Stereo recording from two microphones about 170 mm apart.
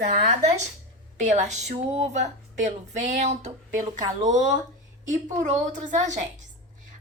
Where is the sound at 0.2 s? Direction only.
40° right (ahead or behind).